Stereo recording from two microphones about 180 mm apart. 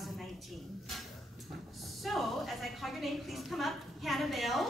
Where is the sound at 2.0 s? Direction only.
Centre (ahead or behind).